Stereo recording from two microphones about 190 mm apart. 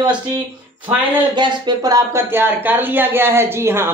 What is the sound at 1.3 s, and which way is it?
Speech, 25° right (ahead or behind).